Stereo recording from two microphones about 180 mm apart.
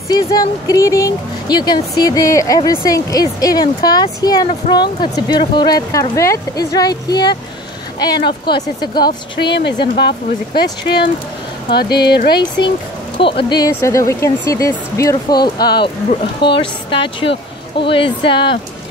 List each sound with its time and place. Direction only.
0.1 s speech: 20° left (ahead or behind)
9.4 s a woman's voice: 70° left (ahead or behind)
13.2 s speech: 30° left (ahead or behind)
13.7 s speech: 15° left (ahead or behind)